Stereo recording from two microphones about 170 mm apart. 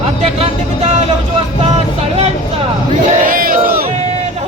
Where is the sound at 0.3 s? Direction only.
40° right (ahead or behind).